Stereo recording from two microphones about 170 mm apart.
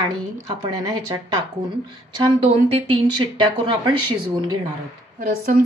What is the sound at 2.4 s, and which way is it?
A woman's voice, 35° right (ahead or behind).